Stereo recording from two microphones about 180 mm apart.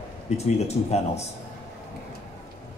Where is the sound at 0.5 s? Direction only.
35° left (ahead or behind).